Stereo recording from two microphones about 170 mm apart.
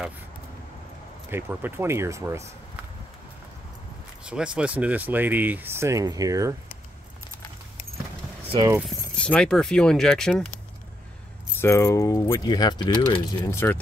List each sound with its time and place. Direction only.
1.3 s speech: 10° right (ahead or behind)
4.3 s speech: 5° right (ahead or behind)
8.8 s speech: 5° left (ahead or behind)
11.5 s speech: 15° left (ahead or behind)
13.4 s speech: 15° left (ahead or behind)